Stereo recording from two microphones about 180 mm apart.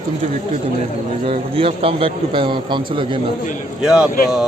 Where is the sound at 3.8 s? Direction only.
5° right (ahead or behind).